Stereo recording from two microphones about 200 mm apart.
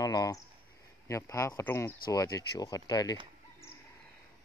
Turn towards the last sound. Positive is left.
turn(degrees=20)  # may be behind; listen again after turning